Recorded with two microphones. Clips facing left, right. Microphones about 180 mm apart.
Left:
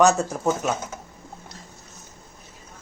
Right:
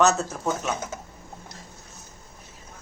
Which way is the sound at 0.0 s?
10° left (ahead or behind).